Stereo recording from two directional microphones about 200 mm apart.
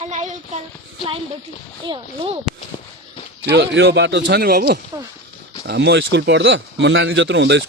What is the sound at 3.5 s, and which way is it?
Speech, 60° right (ahead or behind).